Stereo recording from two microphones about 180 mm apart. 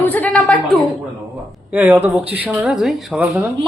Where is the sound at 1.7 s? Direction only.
10° right (ahead or behind).